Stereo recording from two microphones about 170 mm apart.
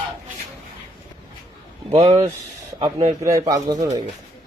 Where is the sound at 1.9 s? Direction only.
30° right (ahead or behind).